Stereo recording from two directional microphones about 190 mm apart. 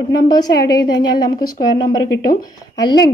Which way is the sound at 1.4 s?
20° left (ahead or behind).